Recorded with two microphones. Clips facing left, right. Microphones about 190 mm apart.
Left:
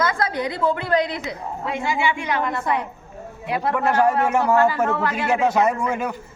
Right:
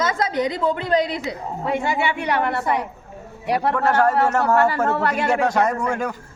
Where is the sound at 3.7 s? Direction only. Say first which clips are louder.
Left 1 dB; 10° left (ahead or behind).